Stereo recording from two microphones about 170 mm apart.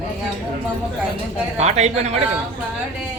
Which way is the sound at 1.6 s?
40° right (ahead or behind).